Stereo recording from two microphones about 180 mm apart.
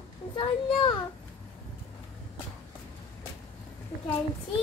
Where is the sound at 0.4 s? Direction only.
25° left (ahead or behind).